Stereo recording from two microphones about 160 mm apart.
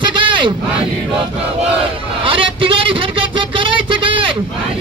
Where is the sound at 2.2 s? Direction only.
30° right (ahead or behind).